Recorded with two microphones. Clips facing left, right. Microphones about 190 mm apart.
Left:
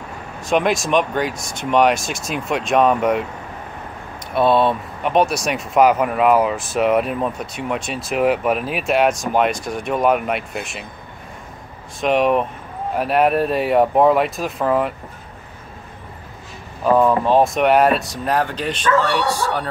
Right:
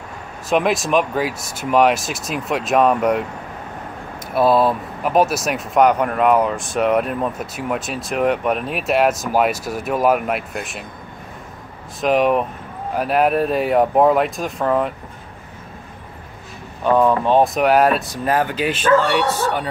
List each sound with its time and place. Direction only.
0.5 s speech: centre (ahead or behind)
4.3 s speech: centre (ahead or behind)
12.0 s speech: centre (ahead or behind)
16.8 s speech: 5° left (ahead or behind)